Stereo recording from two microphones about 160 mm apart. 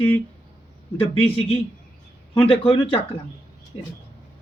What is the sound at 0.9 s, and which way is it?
Speech, 35° left (ahead or behind).